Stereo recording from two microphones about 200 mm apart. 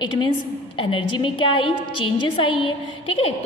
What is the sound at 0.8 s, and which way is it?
A woman's voice, 25° left (ahead or behind).